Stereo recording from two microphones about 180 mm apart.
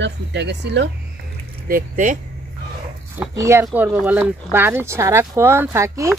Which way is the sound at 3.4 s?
15° right (ahead or behind).